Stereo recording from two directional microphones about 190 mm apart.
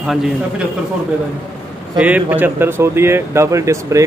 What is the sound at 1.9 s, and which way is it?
Speech, 5° right (ahead or behind).